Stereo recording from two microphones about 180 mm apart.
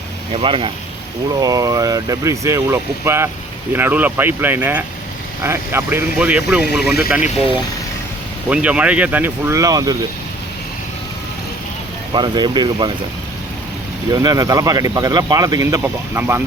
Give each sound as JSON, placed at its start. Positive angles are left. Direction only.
{"t": 0.3, "sound": "speech", "side_deg": -30}
{"t": 1.4, "sound": "speech", "side_deg": -20}
{"t": 8.4, "sound": "speech", "side_deg": -5}
{"t": 12.1, "sound": "speech", "side_deg": -25}
{"t": 14.1, "sound": "speech", "side_deg": -20}